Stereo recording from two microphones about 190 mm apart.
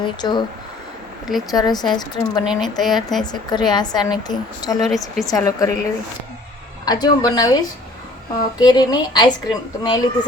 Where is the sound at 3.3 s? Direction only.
25° left (ahead or behind).